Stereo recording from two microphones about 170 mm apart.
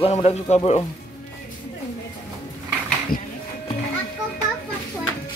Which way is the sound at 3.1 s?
60° left (ahead or behind).